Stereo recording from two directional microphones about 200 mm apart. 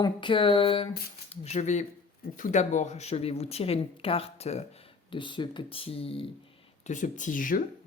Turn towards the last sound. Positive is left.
turn(degrees=45)  # may be behind; listen again after turning